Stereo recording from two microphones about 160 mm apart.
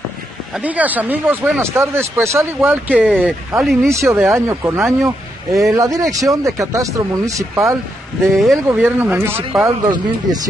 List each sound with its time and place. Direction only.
0.6 s speech: 10° right (ahead or behind)
3.1 s speech: centre (ahead or behind)
3.9 s speech: 20° right (ahead or behind)